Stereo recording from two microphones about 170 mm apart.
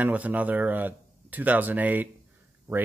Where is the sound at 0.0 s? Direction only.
10° right (ahead or behind).